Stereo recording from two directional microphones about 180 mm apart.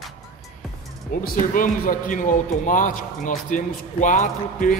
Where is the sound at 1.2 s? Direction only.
50° left (ahead or behind).